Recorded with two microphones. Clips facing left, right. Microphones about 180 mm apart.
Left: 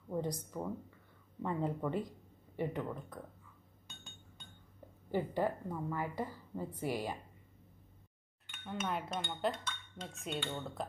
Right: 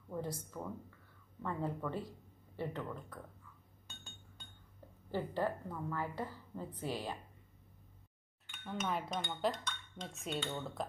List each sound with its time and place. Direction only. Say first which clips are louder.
0.1 s speech: left 4 dB; 15° left (ahead or behind)
5.1 s a woman's voice: left 2 dB; 15° left (ahead or behind)
8.5 s speech: even; centre (ahead or behind)